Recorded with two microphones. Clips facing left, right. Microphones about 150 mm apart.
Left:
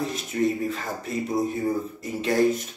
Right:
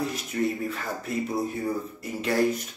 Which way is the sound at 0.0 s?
25° left (ahead or behind).